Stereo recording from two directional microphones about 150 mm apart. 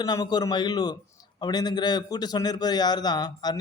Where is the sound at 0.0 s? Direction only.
25° left (ahead or behind).